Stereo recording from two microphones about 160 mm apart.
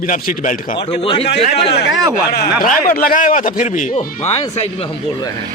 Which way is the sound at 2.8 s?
60° left (ahead or behind).